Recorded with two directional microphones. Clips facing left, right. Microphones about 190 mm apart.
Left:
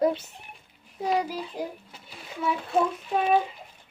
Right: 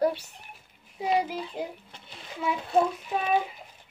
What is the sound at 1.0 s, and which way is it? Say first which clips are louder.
Speech: even; 10° right (ahead or behind).